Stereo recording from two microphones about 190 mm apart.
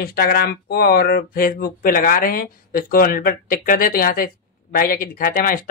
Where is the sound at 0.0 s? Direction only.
50° left (ahead or behind).